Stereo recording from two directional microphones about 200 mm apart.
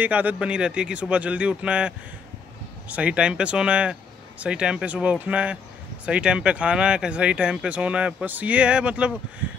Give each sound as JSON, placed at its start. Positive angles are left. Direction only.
{"t": 0.0, "sound": "speech", "side_deg": -5}